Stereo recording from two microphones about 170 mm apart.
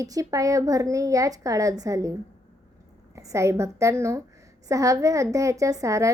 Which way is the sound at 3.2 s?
20° right (ahead or behind).